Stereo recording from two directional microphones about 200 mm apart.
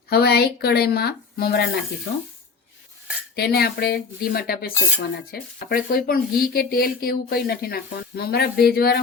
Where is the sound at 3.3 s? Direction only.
50° left (ahead or behind).